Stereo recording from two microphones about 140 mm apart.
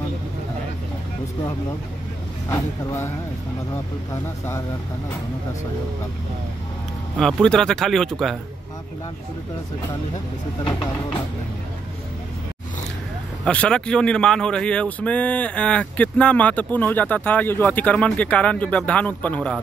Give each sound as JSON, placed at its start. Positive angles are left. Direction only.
{"t": 2.5, "sound": "speech", "side_deg": 25}
{"t": 4.1, "sound": "speech", "side_deg": 25}
{"t": 7.2, "sound": "speech", "side_deg": 0}
{"t": 10.6, "sound": "speech", "side_deg": 35}
{"t": 13.5, "sound": "speech", "side_deg": 5}